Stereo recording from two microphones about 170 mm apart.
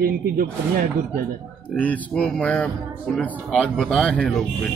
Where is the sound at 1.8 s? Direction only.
10° left (ahead or behind).